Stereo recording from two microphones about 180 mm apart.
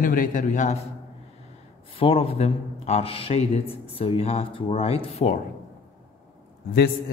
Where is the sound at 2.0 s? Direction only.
30° left (ahead or behind).